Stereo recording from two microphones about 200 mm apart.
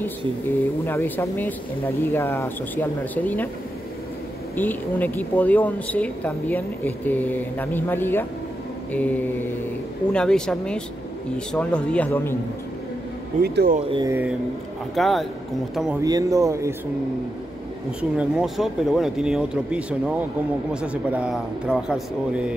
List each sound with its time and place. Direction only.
0.8 s a woman's voice: 10° left (ahead or behind)
4.6 s a woman's voice: 10° left (ahead or behind)
13.4 s speech: 50° right (ahead or behind)
13.8 s speech: 25° right (ahead or behind)
15.0 s speech: centre (ahead or behind)
16.0 s speech: 15° right (ahead or behind)
18.1 s speech: 5° right (ahead or behind)